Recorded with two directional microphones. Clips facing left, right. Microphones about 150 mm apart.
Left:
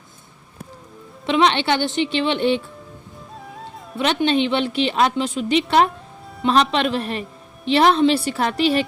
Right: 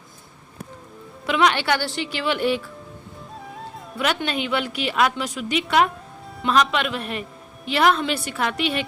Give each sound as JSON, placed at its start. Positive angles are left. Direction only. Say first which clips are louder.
{"t": 1.3, "sound": "a woman's voice", "louder": "left 2 dB", "side_deg": 25}
{"t": 3.9, "sound": "a woman's voice", "louder": "left 6 dB", "side_deg": 25}